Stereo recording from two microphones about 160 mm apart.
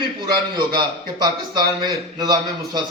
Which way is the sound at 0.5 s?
30° right (ahead or behind).